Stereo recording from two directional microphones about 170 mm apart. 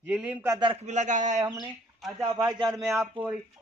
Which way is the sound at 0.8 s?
45° right (ahead or behind).